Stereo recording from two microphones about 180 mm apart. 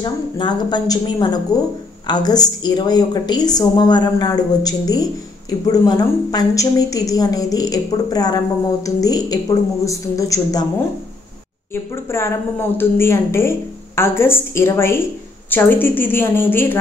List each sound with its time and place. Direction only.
0.0 s a woman's voice: 25° left (ahead or behind)
11.7 s a woman's voice: 15° left (ahead or behind)